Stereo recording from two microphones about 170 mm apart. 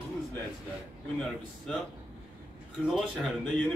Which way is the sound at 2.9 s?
Centre (ahead or behind).